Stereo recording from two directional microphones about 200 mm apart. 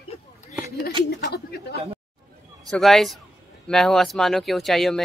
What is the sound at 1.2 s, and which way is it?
Speech, 55° left (ahead or behind).